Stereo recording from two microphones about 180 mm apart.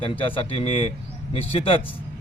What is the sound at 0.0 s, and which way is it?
A man's voice, 30° left (ahead or behind).